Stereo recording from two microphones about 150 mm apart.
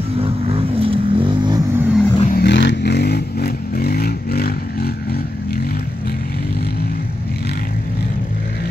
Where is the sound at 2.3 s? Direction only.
90° left.